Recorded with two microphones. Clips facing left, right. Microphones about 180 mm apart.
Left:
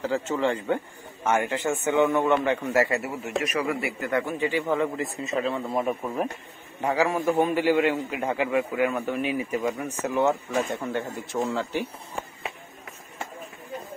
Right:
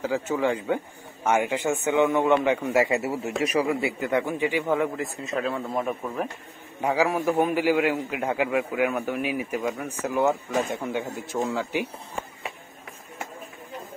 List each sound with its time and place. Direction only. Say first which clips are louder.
0.0 s a man's voice: even; 10° right (ahead or behind)
3.0 s a man's voice: right 2 dB; 25° right (ahead or behind); by 6.2 s 5° left (ahead or behind)
6.8 s a man's voice: right 1 dB; 10° right (ahead or behind)